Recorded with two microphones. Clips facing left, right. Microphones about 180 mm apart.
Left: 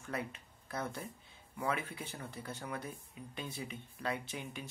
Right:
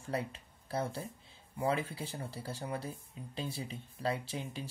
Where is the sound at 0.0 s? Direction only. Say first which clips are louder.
Right 3 dB; 30° right (ahead or behind).